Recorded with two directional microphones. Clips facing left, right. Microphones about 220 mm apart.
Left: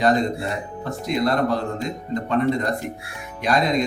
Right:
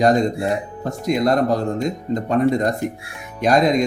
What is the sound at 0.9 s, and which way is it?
Speech, 45° right (ahead or behind).